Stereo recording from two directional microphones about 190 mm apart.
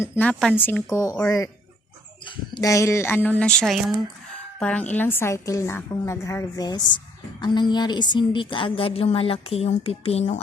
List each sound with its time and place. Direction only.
0.0 s a woman's voice: 5° left (ahead or behind); by 10.4 s 30° left (ahead or behind)